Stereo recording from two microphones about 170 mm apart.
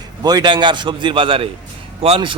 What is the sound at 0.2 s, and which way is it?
A man's voice, 25° right (ahead or behind).